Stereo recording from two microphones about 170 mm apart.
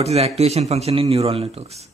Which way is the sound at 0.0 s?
40° right (ahead or behind).